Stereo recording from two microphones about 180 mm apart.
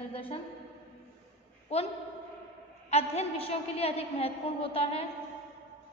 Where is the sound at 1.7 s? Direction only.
35° left (ahead or behind).